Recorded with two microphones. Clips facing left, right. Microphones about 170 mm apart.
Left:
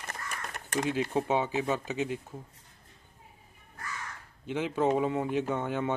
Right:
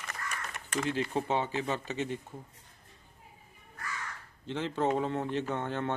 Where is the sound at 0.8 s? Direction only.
10° left (ahead or behind).